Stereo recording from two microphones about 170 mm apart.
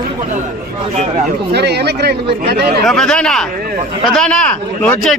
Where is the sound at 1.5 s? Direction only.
75° right (ahead or behind).